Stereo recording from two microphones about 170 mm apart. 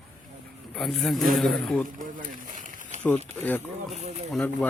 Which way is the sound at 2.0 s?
50° right (ahead or behind).